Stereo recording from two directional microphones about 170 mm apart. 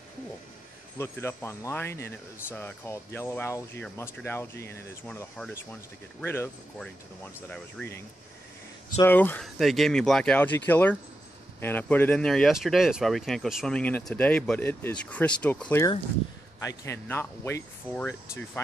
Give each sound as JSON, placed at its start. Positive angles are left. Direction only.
{"t": 0.9, "sound": "speech", "side_deg": 15}
{"t": 6.2, "sound": "speech", "side_deg": 15}
{"t": 9.6, "sound": "speech", "side_deg": 0}